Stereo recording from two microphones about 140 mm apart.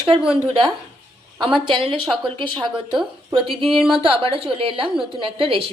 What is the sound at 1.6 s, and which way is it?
A woman's voice, 35° right (ahead or behind).